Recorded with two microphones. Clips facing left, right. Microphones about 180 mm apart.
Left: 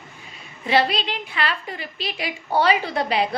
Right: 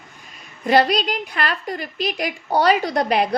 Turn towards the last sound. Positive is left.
turn(degrees=-45)  # may be behind; listen again after turning